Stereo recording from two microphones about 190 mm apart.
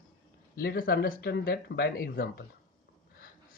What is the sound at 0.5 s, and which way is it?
Speech, 55° left (ahead or behind).